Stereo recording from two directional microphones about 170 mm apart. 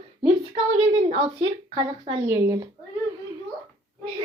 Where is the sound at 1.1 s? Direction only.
35° right (ahead or behind).